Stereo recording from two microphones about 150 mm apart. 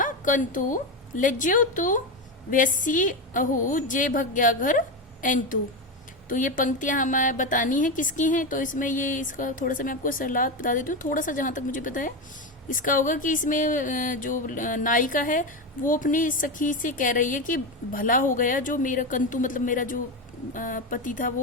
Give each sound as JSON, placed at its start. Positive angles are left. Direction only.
{"t": 0.0, "sound": "a woman's voice", "side_deg": 60}